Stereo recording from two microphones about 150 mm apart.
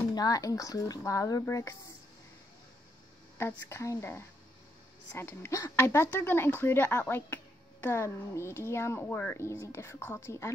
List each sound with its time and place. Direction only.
0.1 s speech: 25° left (ahead or behind)
3.3 s speech: 15° left (ahead or behind)